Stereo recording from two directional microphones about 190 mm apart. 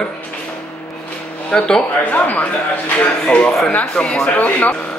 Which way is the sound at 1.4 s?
5° left (ahead or behind).